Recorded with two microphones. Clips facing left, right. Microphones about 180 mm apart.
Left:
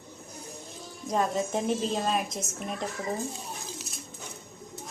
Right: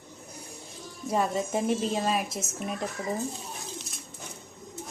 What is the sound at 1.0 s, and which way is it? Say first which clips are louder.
A woman's voice: even; 5° right (ahead or behind).